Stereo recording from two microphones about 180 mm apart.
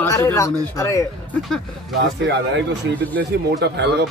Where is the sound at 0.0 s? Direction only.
15° left (ahead or behind).